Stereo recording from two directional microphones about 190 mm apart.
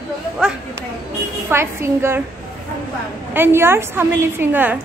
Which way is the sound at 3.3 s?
10° right (ahead or behind).